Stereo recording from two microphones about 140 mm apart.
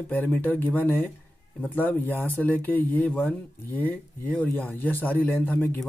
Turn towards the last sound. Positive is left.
turn(degrees=15)  # may be behind; listen again after turning